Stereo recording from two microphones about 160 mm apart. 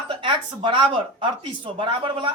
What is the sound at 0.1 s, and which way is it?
Speech, 30° right (ahead or behind).